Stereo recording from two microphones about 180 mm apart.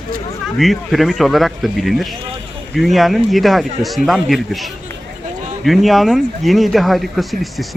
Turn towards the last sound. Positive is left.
turn(degrees=0)  # may be behind; listen again after turning